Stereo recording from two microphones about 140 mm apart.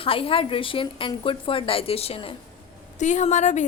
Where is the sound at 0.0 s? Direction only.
40° left (ahead or behind).